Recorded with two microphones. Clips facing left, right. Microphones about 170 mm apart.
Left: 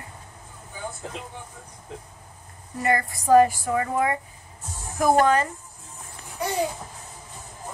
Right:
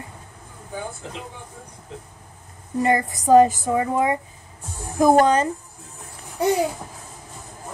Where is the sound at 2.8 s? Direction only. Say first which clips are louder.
Right 4 dB; 20° right (ahead or behind).